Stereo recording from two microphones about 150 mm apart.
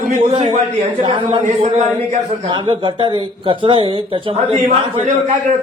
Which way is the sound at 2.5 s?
35° right (ahead or behind).